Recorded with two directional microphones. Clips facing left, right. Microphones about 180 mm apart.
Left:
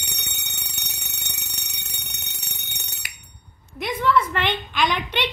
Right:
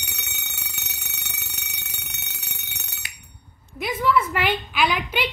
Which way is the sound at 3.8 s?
5° right (ahead or behind).